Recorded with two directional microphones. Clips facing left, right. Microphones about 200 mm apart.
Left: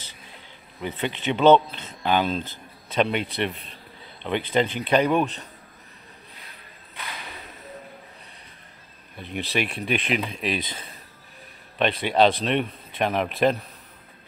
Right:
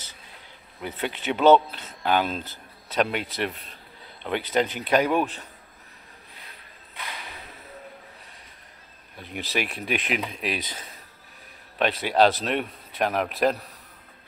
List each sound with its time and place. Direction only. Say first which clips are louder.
0.7 s speech: left 2 dB; 5° right (ahead or behind)
9.2 s speech: left 2 dB; 5° right (ahead or behind)